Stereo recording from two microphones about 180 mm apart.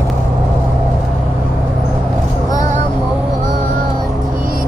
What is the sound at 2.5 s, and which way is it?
Vehicle, 45° right (ahead or behind).